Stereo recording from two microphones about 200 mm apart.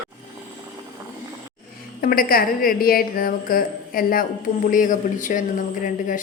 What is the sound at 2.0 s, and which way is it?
A woman's voice, 45° left (ahead or behind).